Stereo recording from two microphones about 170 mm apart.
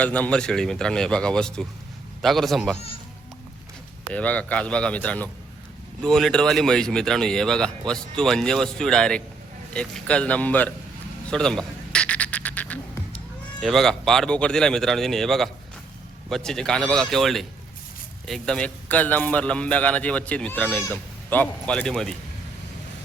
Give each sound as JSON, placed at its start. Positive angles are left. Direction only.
{"t": 0.0, "sound": "speech", "side_deg": 10}
{"t": 2.7, "sound": "speech", "side_deg": 35}
{"t": 4.1, "sound": "speech", "side_deg": 10}
{"t": 11.3, "sound": "duck", "side_deg": 5}
{"t": 13.6, "sound": "speech", "side_deg": 0}